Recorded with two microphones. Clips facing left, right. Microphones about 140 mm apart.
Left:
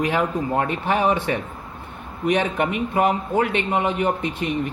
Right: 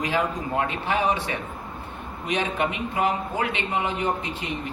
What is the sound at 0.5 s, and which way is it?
Speech, 50° left (ahead or behind).